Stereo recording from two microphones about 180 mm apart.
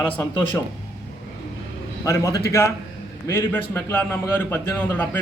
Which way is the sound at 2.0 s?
15° left (ahead or behind).